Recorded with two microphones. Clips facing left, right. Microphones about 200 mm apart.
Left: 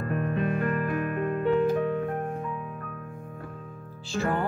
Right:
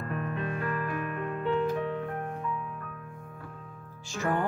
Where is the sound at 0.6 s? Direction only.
50° left (ahead or behind).